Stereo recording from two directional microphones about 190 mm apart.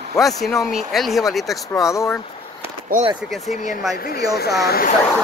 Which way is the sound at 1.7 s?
15° left (ahead or behind).